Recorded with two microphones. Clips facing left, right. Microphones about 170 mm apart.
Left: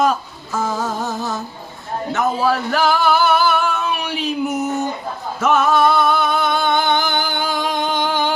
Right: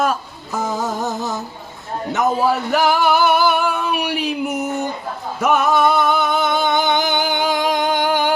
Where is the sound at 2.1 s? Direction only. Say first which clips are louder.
Right 1 dB; 20° right (ahead or behind).